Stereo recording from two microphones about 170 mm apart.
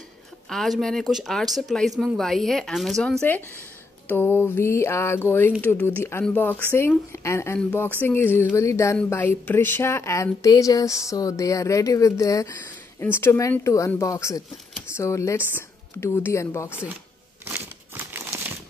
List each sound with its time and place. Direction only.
0.5 s speech: centre (ahead or behind)
17.5 s crumpling: 15° right (ahead or behind)